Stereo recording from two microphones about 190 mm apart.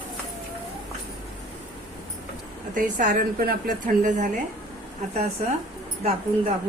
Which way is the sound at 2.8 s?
45° right (ahead or behind).